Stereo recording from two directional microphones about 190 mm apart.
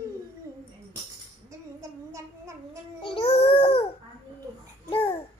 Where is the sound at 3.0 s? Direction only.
25° left (ahead or behind).